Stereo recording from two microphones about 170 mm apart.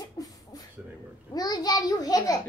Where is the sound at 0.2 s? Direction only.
20° left (ahead or behind).